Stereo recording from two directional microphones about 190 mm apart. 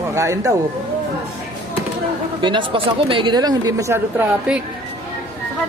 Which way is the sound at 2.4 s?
25° right (ahead or behind).